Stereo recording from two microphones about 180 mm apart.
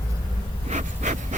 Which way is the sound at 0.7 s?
40° right (ahead or behind).